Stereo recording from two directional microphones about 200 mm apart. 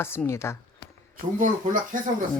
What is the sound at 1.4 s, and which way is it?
Speech, 40° right (ahead or behind).